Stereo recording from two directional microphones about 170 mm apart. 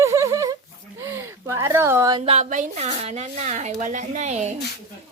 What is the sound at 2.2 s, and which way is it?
Speech, 40° right (ahead or behind).